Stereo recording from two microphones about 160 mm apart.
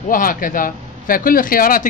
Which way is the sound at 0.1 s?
60° left (ahead or behind).